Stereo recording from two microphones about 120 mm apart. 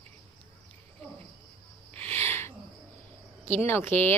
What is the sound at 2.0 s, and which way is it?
Owl, 20° left (ahead or behind).